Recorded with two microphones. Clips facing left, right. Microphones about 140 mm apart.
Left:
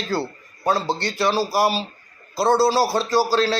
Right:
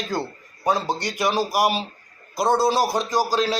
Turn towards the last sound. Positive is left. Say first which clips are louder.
# left 3 dB
turn(degrees=-15)  # may be behind; listen again after turning